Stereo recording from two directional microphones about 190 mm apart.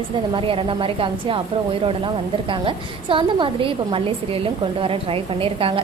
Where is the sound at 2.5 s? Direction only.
25° right (ahead or behind).